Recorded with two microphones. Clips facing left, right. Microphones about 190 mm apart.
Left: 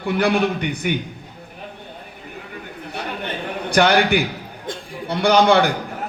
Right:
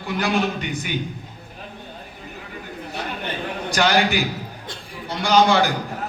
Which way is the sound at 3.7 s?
55° left (ahead or behind).